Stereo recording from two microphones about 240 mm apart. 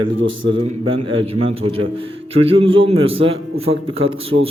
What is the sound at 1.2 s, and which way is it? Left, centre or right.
A man's voice, right.